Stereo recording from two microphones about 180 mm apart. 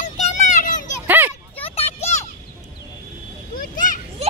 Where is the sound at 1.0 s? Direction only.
10° right (ahead or behind).